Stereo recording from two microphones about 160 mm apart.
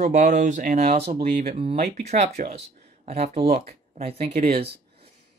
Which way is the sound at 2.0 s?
45° right (ahead or behind).